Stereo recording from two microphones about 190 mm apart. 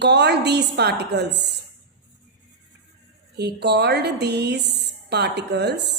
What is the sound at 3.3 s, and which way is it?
A woman's voice, 60° right (ahead or behind).